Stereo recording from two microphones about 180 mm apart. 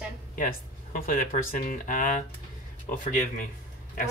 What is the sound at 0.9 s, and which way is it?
Speech, 50° left (ahead or behind).